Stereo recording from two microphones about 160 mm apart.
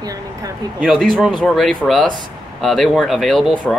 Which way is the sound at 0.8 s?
Centre (ahead or behind).